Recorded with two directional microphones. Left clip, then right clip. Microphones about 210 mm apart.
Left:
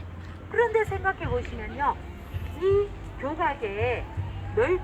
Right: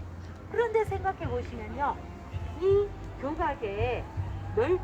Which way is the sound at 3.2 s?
30° right (ahead or behind).